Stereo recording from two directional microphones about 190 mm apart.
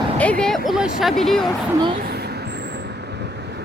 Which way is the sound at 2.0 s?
55° right (ahead or behind).